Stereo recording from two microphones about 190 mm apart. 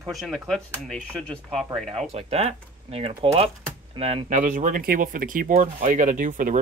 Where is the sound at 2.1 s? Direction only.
35° right (ahead or behind).